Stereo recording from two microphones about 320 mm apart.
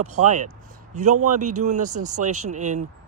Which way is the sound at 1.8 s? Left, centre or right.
Right.